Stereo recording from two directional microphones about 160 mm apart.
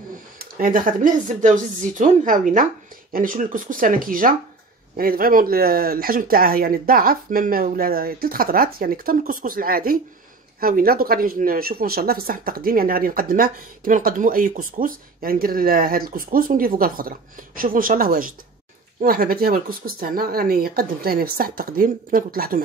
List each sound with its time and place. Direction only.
0.4 s speech: 60° right (ahead or behind)